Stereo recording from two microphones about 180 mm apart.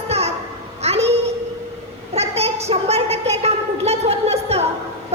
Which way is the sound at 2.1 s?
35° right (ahead or behind).